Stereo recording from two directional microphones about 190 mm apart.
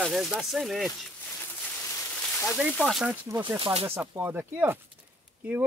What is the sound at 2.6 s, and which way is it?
Speech, centre (ahead or behind).